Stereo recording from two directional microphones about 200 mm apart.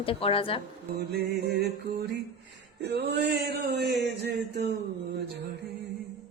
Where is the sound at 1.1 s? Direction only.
55° right (ahead or behind).